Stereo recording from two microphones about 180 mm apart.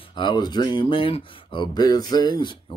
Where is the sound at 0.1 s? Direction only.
25° left (ahead or behind).